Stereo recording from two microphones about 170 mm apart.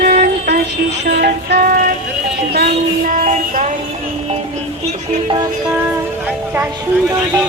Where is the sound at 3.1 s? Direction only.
50° right (ahead or behind).